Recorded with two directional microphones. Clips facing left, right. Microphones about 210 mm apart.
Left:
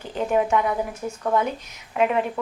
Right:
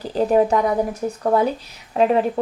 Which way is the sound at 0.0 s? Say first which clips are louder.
Right 6 dB; 35° right (ahead or behind).